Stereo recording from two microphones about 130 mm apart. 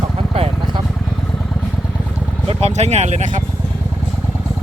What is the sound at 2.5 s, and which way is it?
Speech, 55° right (ahead or behind).